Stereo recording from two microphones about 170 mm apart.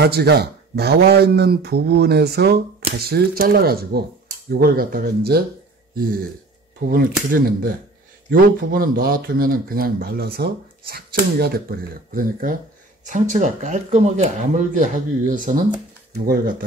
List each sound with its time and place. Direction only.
0.0 s speech: 75° right (ahead or behind)
6.9 s speech: 60° right (ahead or behind)
16.1 s speech: 60° right (ahead or behind)